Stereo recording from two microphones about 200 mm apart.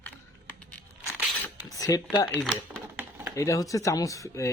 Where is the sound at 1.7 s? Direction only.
15° left (ahead or behind).